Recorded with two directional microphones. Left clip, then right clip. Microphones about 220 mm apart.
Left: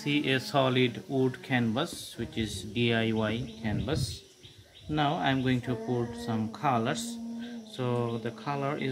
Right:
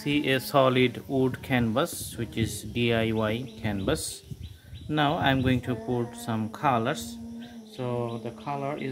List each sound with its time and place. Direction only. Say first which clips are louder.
0.0 s speech: right 2 dB; 20° right (ahead or behind)
7.8 s speech: even; centre (ahead or behind)